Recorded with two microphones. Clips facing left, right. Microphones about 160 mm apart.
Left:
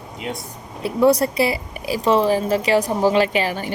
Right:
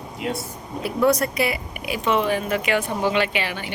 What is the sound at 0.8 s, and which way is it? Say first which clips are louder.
A woman's voice: left 4 dB; 30° left (ahead or behind).